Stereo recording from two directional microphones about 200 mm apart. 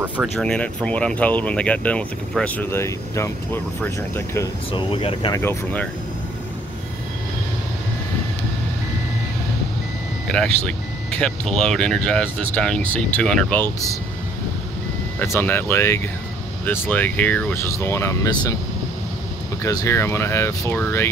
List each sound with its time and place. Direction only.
0.4 s speech: 5° left (ahead or behind)
4.7 s speech: 25° left (ahead or behind)
5.4 s speech: 10° left (ahead or behind)
10.2 s speech: 5° left (ahead or behind)
15.1 s speech: 10° left (ahead or behind)
19.6 s speech: 15° left (ahead or behind)